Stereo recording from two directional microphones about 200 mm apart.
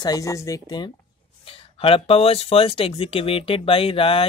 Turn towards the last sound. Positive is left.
turn(degrees=30)  # may be behind; listen again after turning